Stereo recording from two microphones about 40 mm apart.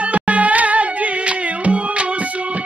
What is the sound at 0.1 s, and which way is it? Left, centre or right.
Music, right.